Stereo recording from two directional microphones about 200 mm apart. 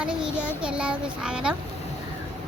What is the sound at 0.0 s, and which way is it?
A child's voice, 5° right (ahead or behind).